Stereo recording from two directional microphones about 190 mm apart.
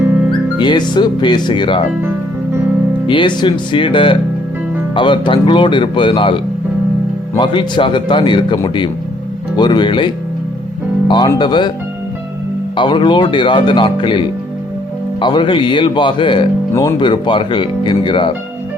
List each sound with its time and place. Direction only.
0.0 s music: 10° right (ahead or behind)
0.6 s speech: 25° left (ahead or behind)
3.1 s speech: 25° left (ahead or behind)
11.1 s speech: 25° left (ahead or behind)
12.7 s speech: 25° left (ahead or behind)